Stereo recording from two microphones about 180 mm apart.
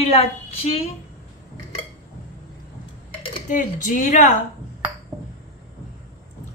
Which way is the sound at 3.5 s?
45° left (ahead or behind).